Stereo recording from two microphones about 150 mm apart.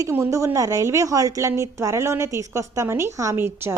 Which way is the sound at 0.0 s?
20° right (ahead or behind).